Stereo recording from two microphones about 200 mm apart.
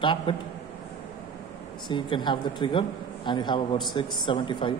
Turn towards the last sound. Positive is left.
turn(degrees=25)  # may be behind; listen again after turning